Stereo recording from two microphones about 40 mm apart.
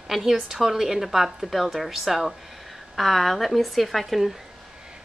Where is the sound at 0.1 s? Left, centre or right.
Centre.